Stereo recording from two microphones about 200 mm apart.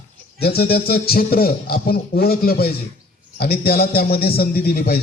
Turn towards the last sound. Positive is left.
turn(degrees=50)  # may be behind; listen again after turning